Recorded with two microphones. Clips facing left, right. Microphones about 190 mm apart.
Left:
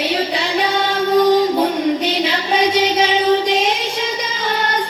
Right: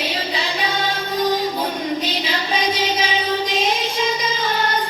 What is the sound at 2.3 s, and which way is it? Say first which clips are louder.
Music: left 4 dB; 65° left (ahead or behind).